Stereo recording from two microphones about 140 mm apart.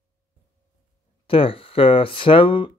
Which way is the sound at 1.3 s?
40° left (ahead or behind).